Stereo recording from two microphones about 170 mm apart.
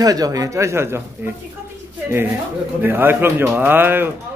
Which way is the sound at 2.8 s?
15° right (ahead or behind).